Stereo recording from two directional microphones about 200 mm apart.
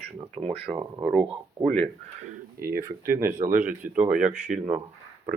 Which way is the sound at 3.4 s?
40° right (ahead or behind).